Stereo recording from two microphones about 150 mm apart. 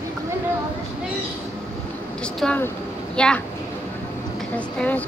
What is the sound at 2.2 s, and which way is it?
Vehicle, 10° left (ahead or behind).